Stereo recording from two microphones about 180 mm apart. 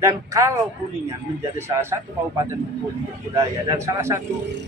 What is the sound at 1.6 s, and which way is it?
Speech, 15° right (ahead or behind).